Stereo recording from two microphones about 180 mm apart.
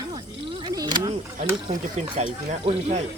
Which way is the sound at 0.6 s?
20° right (ahead or behind).